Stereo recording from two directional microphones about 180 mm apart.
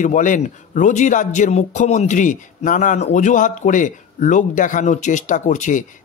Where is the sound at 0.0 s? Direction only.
45° left (ahead or behind).